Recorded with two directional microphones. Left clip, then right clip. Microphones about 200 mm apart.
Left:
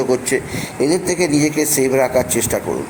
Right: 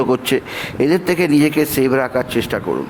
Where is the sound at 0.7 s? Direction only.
35° right (ahead or behind).